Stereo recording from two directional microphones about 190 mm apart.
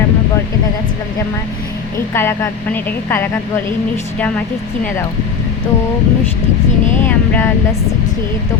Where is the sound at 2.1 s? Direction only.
10° left (ahead or behind).